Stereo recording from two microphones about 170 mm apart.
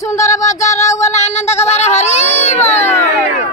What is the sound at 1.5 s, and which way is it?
Speech, 40° left (ahead or behind).